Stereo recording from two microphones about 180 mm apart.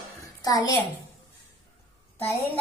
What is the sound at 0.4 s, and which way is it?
Speech, 20° left (ahead or behind).